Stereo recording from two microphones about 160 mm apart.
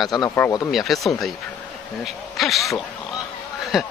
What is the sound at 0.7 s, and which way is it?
Speech, centre (ahead or behind).